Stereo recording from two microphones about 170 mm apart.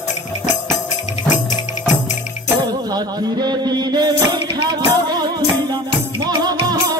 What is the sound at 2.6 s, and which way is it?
Music, 25° right (ahead or behind).